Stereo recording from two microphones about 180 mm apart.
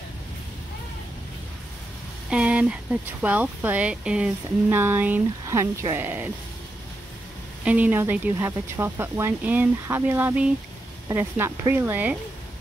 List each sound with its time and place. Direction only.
2.2 s speech: 5° right (ahead or behind)
7.6 s speech: 10° right (ahead or behind)